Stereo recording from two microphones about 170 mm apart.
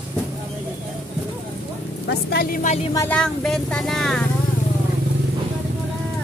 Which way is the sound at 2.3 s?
60° left (ahead or behind).